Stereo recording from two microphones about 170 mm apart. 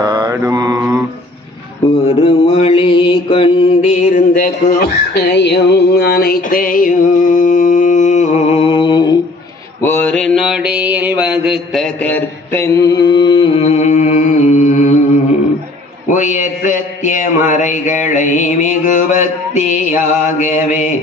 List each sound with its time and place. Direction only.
0.0 s mantra: 25° right (ahead or behind)
2.0 s mantra: 35° left (ahead or behind); by 4.9 s 55° left (ahead or behind)
5.3 s music: 80° left; by 9.1 s 30° left (ahead or behind)
9.8 s mantra: 10° left (ahead or behind); by 15.0 s 50° left (ahead or behind)
16.1 s mantra: 45° left (ahead or behind)